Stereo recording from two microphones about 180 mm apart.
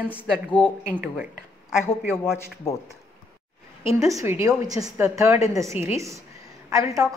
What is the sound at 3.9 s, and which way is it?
A woman's voice, 15° right (ahead or behind).